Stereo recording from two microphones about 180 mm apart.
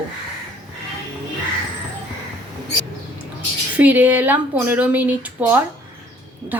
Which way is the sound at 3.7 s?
10° right (ahead or behind).